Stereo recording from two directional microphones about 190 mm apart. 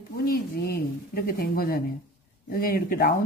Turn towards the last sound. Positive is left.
turn(degrees=50)  # may be behind; listen again after turning